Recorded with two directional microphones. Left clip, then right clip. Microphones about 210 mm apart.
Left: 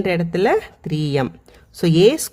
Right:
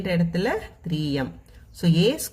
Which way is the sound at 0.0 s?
40° left (ahead or behind).